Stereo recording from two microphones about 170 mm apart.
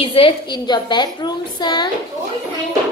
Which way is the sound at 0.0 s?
30° left (ahead or behind).